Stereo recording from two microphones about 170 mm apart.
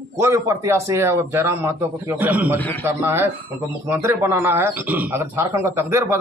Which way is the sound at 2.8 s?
15° right (ahead or behind).